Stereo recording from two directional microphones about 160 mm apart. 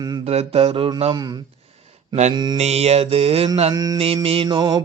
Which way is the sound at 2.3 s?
25° right (ahead or behind).